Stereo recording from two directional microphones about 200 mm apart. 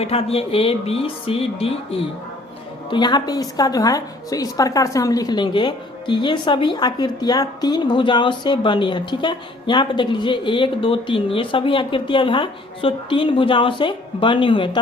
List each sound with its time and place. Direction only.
0.0 s a woman's voice: 30° left (ahead or behind)